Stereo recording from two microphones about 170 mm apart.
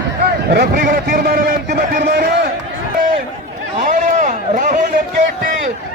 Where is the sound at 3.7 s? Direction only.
50° right (ahead or behind).